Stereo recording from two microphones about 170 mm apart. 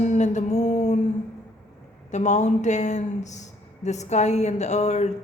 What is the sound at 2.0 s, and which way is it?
Speech, 45° left (ahead or behind).